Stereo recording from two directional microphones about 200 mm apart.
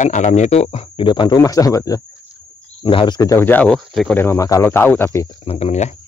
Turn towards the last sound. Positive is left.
turn(degrees=35)  # may be behind; listen again after turning